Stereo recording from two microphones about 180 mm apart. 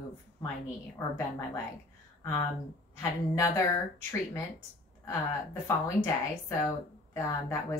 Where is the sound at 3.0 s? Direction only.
15° left (ahead or behind).